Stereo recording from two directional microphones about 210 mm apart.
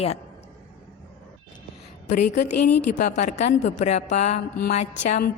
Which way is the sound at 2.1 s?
35° left (ahead or behind).